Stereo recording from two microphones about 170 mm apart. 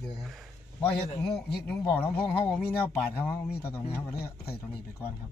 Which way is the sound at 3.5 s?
15° left (ahead or behind).